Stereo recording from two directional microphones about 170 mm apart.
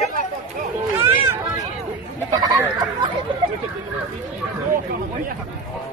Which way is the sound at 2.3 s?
20° right (ahead or behind).